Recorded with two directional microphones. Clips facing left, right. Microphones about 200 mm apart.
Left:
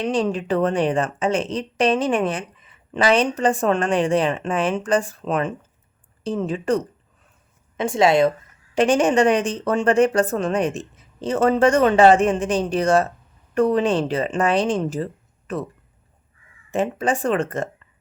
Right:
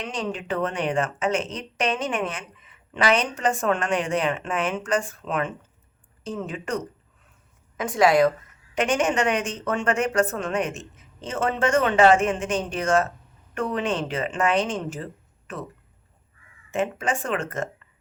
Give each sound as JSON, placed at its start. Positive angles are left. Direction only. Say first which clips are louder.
{"t": 0.0, "sound": "a woman's voice", "louder": "left 8 dB", "side_deg": 35}
{"t": 16.7, "sound": "a woman's voice", "louder": "left 4 dB", "side_deg": 35}